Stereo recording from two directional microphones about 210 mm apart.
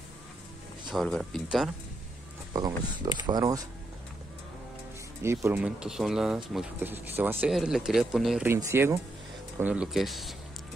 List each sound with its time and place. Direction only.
0.8 s speech: centre (ahead or behind)
2.5 s speech: 20° right (ahead or behind)
5.2 s speech: 15° right (ahead or behind)
8.5 s speech: 15° right (ahead or behind)